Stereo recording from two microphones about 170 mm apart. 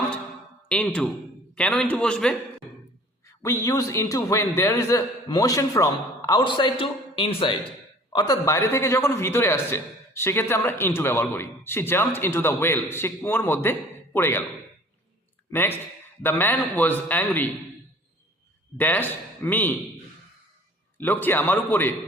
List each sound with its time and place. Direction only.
0.7 s a man's voice: 5° left (ahead or behind)
3.4 s a man's voice: 15° left (ahead or behind)
15.5 s a man's voice: 15° left (ahead or behind)
18.8 s a man's voice: 10° left (ahead or behind)
21.0 s a man's voice: 10° left (ahead or behind)